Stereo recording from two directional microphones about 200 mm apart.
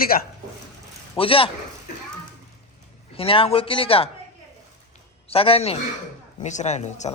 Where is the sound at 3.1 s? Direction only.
25° left (ahead or behind).